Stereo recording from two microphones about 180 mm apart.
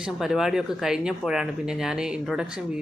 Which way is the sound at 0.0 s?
Centre (ahead or behind).